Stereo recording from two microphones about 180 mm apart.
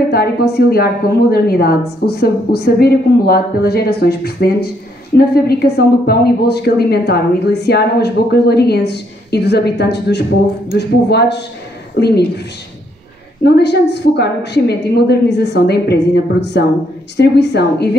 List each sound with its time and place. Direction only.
0.1 s a woman's voice: 60° left (ahead or behind)
13.4 s a woman's voice: 70° left (ahead or behind)